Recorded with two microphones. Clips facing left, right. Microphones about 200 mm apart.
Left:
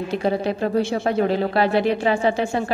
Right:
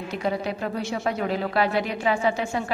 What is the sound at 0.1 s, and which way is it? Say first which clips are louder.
Speech: left 4 dB; 30° left (ahead or behind).